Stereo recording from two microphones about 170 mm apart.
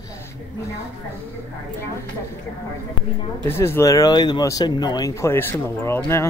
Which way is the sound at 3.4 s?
15° left (ahead or behind).